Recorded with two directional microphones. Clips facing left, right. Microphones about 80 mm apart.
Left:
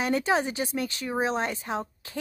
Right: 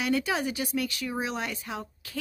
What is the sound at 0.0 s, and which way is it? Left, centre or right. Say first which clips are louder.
A woman's voice: left 3 dB; left.